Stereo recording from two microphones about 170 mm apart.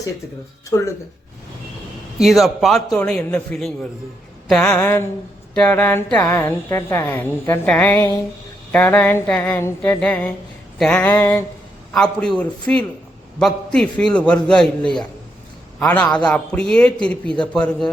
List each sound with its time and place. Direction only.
0.7 s speech: 20° left (ahead or behind)
2.1 s a man's voice: centre (ahead or behind); by 11.4 s 15° left (ahead or behind)
11.9 s a man's voice: 5° left (ahead or behind)
15.8 s a woman's voice: 5° left (ahead or behind)